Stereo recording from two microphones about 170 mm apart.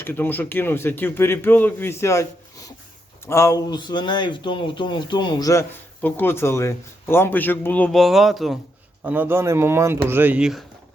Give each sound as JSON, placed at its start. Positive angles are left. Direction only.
{"t": 0.0, "sound": "speech", "side_deg": 10}
{"t": 6.0, "sound": "speech", "side_deg": 10}